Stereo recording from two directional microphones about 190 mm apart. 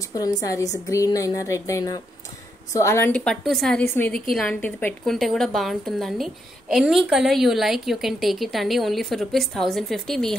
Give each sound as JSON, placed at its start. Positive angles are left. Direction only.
{"t": 0.1, "sound": "a woman's voice", "side_deg": 20}